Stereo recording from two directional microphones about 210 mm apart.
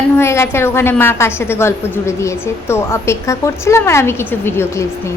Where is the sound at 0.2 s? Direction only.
10° left (ahead or behind).